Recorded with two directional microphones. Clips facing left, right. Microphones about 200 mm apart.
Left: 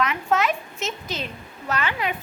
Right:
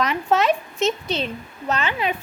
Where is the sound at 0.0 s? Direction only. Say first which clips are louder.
Right 3 dB; 35° right (ahead or behind).